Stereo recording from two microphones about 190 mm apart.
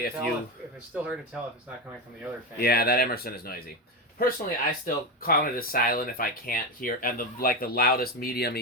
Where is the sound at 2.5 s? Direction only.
55° left (ahead or behind).